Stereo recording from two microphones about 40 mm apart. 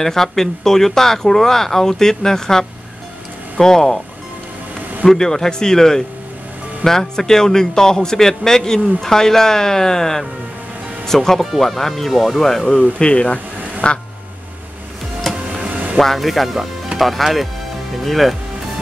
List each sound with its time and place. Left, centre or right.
0.0 s a man's voice: centre
5.0 s a man's voice: centre
13.0 s speech: left
15.6 s music: right
16.0 s speech: centre